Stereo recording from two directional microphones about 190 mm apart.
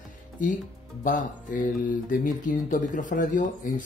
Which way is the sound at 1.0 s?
45° left (ahead or behind).